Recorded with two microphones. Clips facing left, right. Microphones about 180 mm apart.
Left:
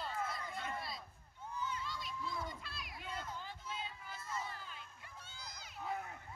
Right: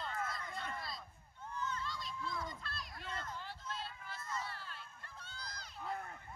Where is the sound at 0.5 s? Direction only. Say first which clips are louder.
Left 1 dB; 5° left (ahead or behind).